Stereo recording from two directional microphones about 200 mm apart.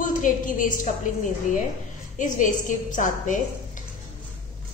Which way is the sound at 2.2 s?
40° left (ahead or behind).